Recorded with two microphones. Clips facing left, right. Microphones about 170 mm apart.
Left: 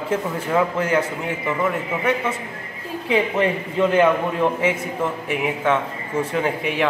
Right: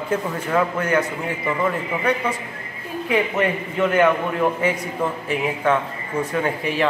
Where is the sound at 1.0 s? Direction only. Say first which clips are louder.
Even; 5° left (ahead or behind).